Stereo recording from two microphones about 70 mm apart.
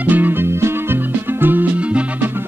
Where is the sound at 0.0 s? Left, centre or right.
Right.